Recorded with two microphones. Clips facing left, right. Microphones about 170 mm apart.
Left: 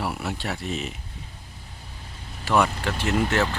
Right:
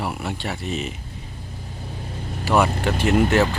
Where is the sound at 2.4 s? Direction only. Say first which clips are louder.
Right 3 dB; 5° right (ahead or behind).